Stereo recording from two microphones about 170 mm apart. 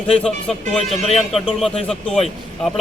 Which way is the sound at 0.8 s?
35° left (ahead or behind).